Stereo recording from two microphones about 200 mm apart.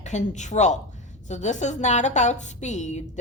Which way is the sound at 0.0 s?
35° left (ahead or behind).